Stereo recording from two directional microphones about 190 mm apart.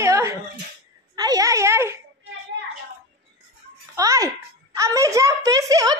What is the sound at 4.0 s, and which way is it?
Music, 20° right (ahead or behind).